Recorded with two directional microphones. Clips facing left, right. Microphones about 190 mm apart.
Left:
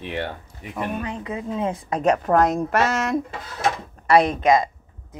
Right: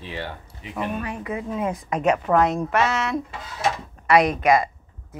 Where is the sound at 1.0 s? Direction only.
20° left (ahead or behind); by 3.2 s 45° left (ahead or behind).